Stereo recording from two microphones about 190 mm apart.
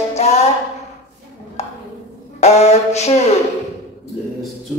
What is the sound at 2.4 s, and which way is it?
Mantra, 35° left (ahead or behind).